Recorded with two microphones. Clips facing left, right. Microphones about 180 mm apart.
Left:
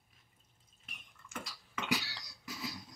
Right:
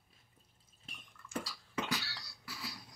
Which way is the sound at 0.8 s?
35° right (ahead or behind).